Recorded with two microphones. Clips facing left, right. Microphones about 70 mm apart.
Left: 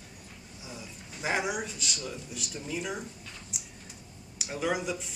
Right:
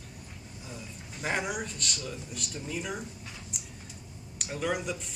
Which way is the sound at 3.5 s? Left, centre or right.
Centre.